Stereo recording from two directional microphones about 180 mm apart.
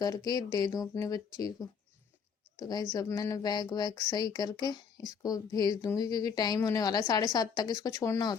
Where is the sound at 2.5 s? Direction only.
20° left (ahead or behind).